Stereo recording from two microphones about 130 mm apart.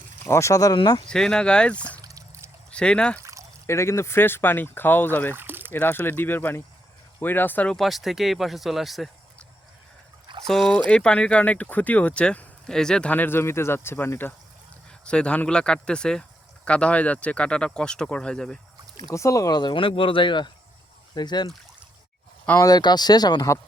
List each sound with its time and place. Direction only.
0.3 s speech: 25° left (ahead or behind)
1.0 s speech: 5° left (ahead or behind)
2.0 s a sound: 25° right (ahead or behind)
2.6 s speech: 10° left (ahead or behind)
3.2 s pour: 25° right (ahead or behind)
3.7 s speech: 20° left (ahead or behind)
5.3 s a sound: 15° right (ahead or behind)
5.7 s speech: 15° left (ahead or behind)
7.8 s speech: centre (ahead or behind)
10.4 s speech: 5° left (ahead or behind)
19.1 s speech: 25° left (ahead or behind)
22.5 s speech: 30° left (ahead or behind)